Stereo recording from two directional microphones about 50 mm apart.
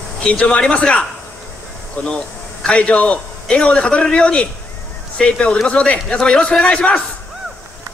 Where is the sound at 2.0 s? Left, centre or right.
Left.